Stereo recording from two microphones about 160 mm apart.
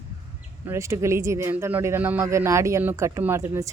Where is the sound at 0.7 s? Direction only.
20° right (ahead or behind).